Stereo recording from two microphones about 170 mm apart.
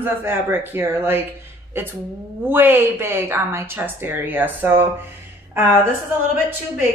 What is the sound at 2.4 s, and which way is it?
A woman's voice, 10° right (ahead or behind).